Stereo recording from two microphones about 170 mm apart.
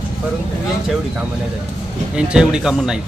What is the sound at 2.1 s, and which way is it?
Speech, 5° right (ahead or behind).